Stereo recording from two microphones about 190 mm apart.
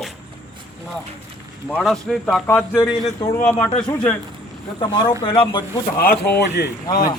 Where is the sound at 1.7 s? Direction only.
5° left (ahead or behind).